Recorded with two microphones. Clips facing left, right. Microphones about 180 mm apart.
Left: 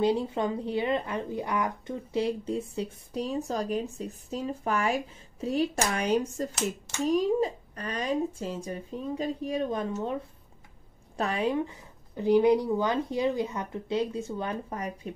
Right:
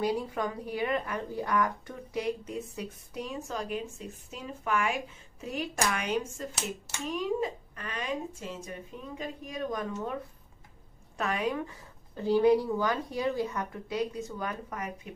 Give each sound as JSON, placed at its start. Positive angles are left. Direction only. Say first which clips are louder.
{"t": 0.0, "sound": "speech", "louder": "left 4 dB", "side_deg": 25}
{"t": 11.1, "sound": "speech", "louder": "left 3 dB", "side_deg": 30}